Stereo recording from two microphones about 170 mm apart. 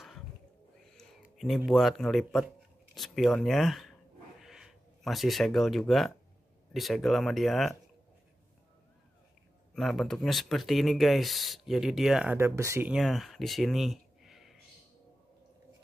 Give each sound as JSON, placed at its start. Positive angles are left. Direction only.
{"t": 0.9, "sound": "a sound", "side_deg": 0}
{"t": 1.7, "sound": "speech", "side_deg": 0}
{"t": 9.8, "sound": "speech", "side_deg": 0}
{"t": 12.4, "sound": "speech", "side_deg": -15}
{"t": 12.8, "sound": "speech", "side_deg": 0}